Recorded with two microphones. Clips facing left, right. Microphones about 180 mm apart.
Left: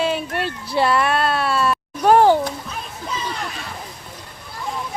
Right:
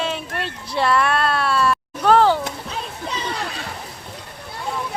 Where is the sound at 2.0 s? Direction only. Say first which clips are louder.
Left 2 dB; 15° left (ahead or behind).